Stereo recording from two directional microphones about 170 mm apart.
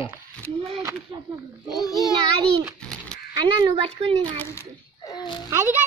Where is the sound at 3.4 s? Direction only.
35° right (ahead or behind).